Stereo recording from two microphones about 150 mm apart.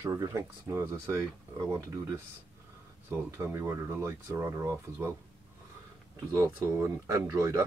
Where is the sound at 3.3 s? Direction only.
15° right (ahead or behind).